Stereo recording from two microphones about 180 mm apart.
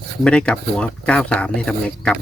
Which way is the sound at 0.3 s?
5° left (ahead or behind).